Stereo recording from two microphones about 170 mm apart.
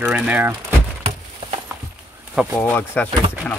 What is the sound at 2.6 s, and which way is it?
Speech, 10° left (ahead or behind).